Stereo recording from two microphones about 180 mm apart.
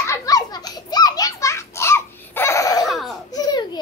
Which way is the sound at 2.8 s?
Centre (ahead or behind).